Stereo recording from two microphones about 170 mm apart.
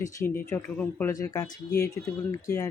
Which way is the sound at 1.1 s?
20° left (ahead or behind).